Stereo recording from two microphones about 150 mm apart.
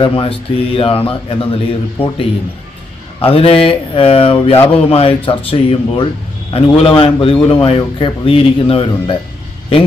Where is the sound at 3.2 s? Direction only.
40° left (ahead or behind).